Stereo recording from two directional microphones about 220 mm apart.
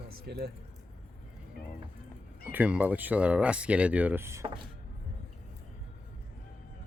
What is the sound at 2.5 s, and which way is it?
Speech, 5° right (ahead or behind).